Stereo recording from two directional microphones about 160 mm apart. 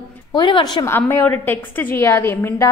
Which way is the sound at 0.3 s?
30° left (ahead or behind).